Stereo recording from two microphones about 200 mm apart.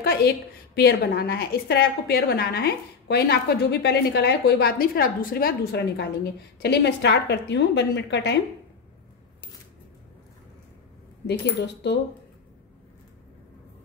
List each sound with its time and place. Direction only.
0.0 s a woman's voice: 50° left (ahead or behind)
11.2 s a woman's voice: 60° left (ahead or behind)